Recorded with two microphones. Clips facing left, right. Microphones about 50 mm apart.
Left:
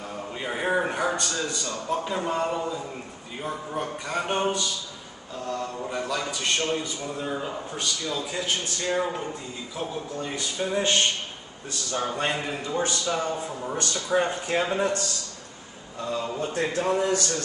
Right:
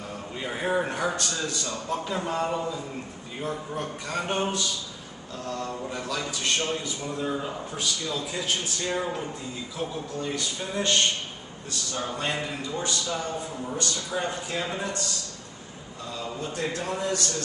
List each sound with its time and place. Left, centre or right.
0.4 s a man's voice: centre
13.7 s a man's voice: left
16.3 s a man's voice: left